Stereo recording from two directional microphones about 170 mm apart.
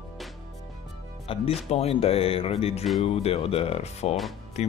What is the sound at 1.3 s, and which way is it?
Speech, 35° left (ahead or behind).